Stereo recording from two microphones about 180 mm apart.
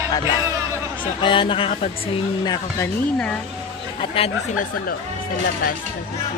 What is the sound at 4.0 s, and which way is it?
Speech, 35° left (ahead or behind).